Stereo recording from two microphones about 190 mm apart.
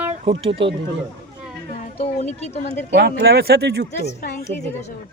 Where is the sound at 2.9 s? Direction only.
60° right (ahead or behind).